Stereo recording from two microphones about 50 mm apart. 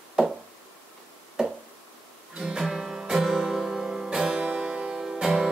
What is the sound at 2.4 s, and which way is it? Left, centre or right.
Music, centre.